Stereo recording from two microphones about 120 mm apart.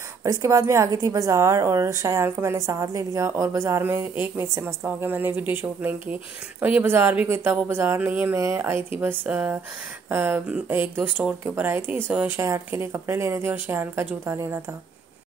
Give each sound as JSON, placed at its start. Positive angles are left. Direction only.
{"t": 0.2, "sound": "a woman's voice", "side_deg": -25}